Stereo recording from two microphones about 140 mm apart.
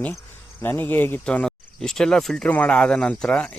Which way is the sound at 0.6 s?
15° left (ahead or behind).